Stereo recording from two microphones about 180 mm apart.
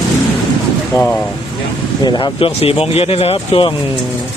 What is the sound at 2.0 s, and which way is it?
Speech, 25° left (ahead or behind).